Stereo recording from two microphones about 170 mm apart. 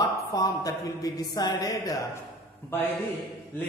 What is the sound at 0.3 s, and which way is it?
A woman's voice, 20° left (ahead or behind).